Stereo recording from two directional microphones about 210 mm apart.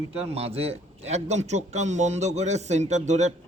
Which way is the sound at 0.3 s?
30° right (ahead or behind).